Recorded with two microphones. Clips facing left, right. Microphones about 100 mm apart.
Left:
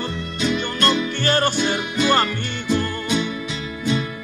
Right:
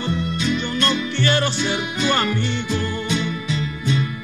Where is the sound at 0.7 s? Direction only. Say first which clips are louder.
Left 1 dB; 40° left (ahead or behind).